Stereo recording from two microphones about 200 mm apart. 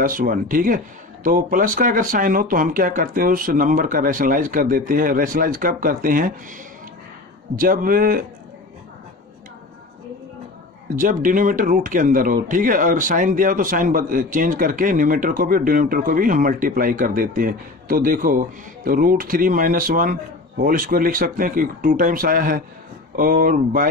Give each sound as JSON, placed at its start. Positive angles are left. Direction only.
{"t": 0.0, "sound": "a man's voice", "side_deg": -45}
{"t": 7.5, "sound": "a man's voice", "side_deg": -45}
{"t": 11.0, "sound": "a man's voice", "side_deg": -40}